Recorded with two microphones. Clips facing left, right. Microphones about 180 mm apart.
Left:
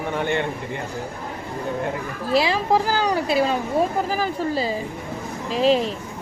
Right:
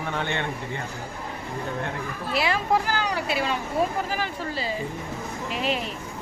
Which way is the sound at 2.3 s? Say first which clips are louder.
Left 5 dB; 35° left (ahead or behind).